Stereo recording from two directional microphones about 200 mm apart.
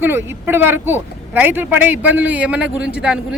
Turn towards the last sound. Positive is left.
turn(degrees=-5)  # may be behind; listen again after turning